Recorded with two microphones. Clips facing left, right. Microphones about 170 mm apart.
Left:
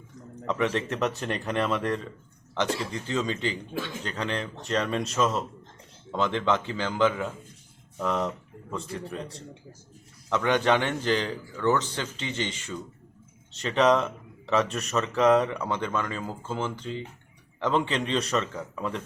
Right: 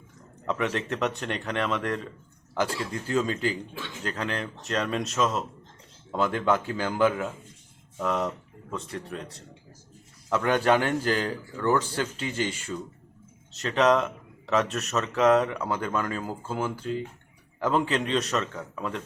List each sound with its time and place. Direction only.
0.4 s speech: centre (ahead or behind)
12.2 s speech: 25° left (ahead or behind)
12.5 s speech: 5° right (ahead or behind)